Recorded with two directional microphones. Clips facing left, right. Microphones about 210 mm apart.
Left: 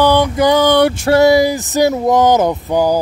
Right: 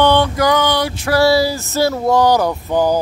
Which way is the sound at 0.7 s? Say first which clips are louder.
Left 7 dB; 55° left (ahead or behind).